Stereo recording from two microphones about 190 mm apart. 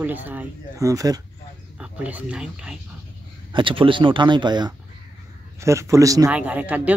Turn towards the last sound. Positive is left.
turn(degrees=-10)  # may be behind; listen again after turning